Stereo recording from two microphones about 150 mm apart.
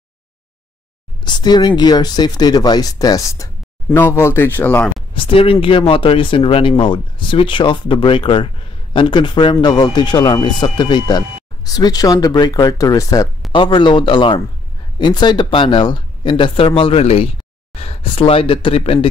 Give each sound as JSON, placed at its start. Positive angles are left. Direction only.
{"t": 1.2, "sound": "speech", "side_deg": 30}
{"t": 5.1, "sound": "speech", "side_deg": 40}
{"t": 13.5, "sound": "speech", "side_deg": 35}